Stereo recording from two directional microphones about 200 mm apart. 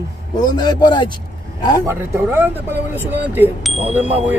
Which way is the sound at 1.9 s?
10° right (ahead or behind).